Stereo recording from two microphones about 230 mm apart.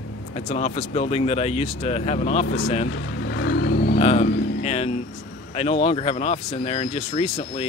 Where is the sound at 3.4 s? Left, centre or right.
Left.